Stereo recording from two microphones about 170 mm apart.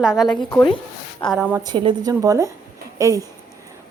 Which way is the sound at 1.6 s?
25° right (ahead or behind).